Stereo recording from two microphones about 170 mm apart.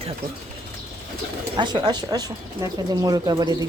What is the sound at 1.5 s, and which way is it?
Speech, 25° right (ahead or behind).